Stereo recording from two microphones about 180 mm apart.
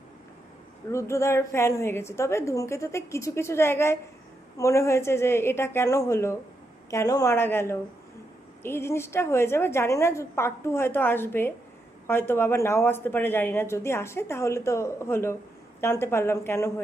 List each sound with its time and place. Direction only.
0.9 s speech: 15° left (ahead or behind)